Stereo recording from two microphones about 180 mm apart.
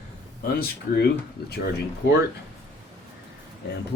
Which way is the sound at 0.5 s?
60° left (ahead or behind).